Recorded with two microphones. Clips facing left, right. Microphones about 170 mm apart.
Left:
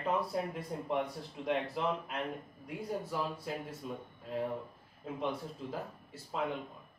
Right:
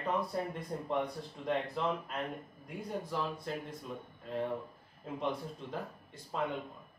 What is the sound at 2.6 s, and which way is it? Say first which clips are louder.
Speech: left 2 dB; 5° left (ahead or behind).